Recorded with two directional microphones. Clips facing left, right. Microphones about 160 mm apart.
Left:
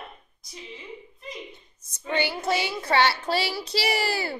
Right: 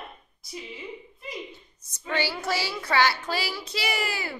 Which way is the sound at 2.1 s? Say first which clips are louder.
Left 2 dB; 20° left (ahead or behind).